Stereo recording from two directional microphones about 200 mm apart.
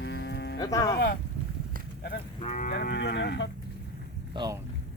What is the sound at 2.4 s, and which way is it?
Livestock, 35° left (ahead or behind).